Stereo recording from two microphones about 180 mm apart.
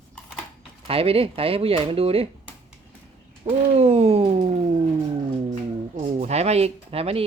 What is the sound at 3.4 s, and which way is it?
Speech, 30° right (ahead or behind).